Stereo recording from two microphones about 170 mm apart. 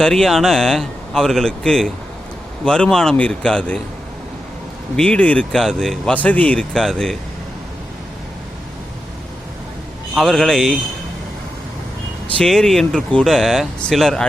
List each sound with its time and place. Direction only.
0.0 s speech: 5° left (ahead or behind)
4.9 s speech: 5° left (ahead or behind)
10.2 s speech: centre (ahead or behind)
12.4 s speech: 5° left (ahead or behind)